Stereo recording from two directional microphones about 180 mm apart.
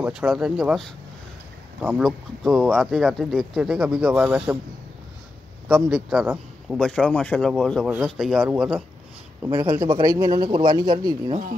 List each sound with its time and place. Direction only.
0.0 s speech: 5° right (ahead or behind)
1.8 s speech: 10° right (ahead or behind)
2.0 s speech: centre (ahead or behind)
5.9 s speech: centre (ahead or behind)
9.4 s a man's voice: 15° right (ahead or behind)